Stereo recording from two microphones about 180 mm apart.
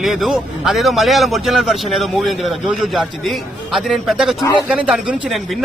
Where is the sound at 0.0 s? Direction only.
Centre (ahead or behind).